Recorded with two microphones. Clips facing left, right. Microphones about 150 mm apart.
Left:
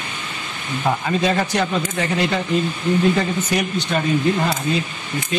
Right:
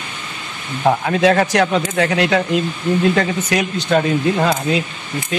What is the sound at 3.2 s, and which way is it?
Speech, 90° right.